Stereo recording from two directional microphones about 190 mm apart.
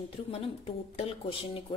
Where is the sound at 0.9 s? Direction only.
30° left (ahead or behind).